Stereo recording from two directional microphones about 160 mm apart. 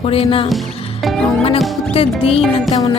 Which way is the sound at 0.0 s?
35° left (ahead or behind).